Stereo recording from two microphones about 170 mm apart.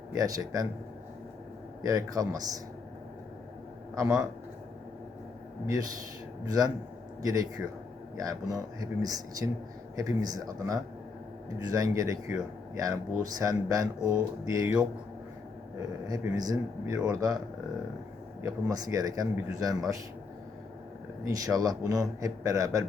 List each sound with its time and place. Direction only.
0.1 s speech: 20° right (ahead or behind)
1.8 s speech: 20° right (ahead or behind)
3.9 s speech: 20° right (ahead or behind)
5.6 s speech: 20° right (ahead or behind)
13.2 s speech: 20° right (ahead or behind)
16.0 s speech: 20° right (ahead or behind)
18.4 s speech: 20° right (ahead or behind)
21.2 s speech: 20° right (ahead or behind)